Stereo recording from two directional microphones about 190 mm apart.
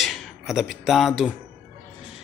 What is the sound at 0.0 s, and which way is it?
Speech, centre (ahead or behind).